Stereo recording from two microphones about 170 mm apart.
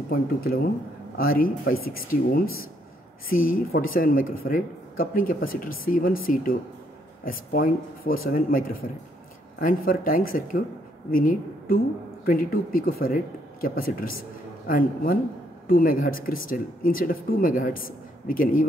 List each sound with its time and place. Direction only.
0.1 s a woman's voice: 60° left (ahead or behind)